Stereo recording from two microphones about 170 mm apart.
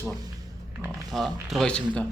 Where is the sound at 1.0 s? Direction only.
Centre (ahead or behind).